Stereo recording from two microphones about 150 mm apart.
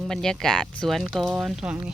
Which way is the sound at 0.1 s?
5° left (ahead or behind).